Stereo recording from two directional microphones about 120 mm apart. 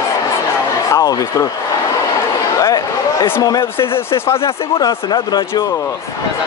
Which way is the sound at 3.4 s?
30° left (ahead or behind).